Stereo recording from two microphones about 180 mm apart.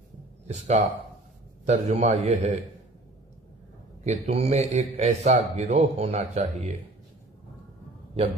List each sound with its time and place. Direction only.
0.5 s a man's voice: 40° right (ahead or behind)
4.3 s a man's voice: 35° right (ahead or behind)
8.2 s a man's voice: 35° right (ahead or behind)